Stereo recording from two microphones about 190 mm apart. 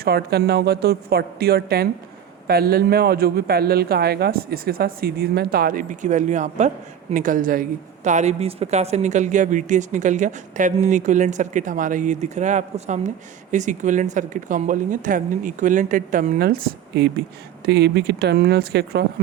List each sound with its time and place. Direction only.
0.0 s a woman's voice: 55° right (ahead or behind)